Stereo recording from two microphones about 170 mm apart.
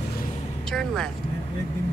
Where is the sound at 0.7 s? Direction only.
5° left (ahead or behind).